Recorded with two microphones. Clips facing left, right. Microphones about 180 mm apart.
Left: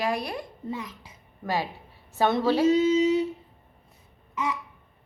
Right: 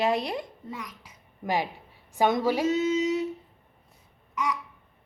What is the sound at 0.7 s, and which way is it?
Speech, 25° left (ahead or behind).